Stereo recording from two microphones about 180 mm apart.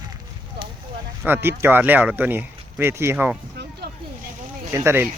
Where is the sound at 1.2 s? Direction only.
10° right (ahead or behind).